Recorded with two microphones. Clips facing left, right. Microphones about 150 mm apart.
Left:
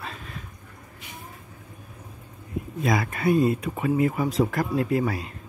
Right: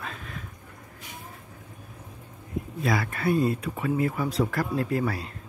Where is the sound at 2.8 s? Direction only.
15° left (ahead or behind).